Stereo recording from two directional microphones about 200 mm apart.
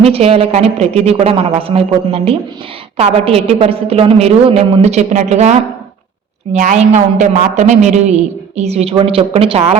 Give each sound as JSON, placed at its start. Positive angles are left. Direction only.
{"t": 0.0, "sound": "a woman's voice", "side_deg": -30}